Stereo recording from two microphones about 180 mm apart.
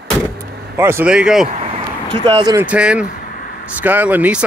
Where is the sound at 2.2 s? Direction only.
25° right (ahead or behind).